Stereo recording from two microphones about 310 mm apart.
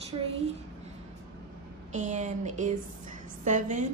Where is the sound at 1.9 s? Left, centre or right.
Right.